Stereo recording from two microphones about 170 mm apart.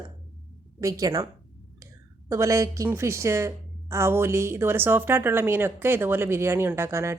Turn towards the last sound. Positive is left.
turn(degrees=-15)  # may be behind; listen again after turning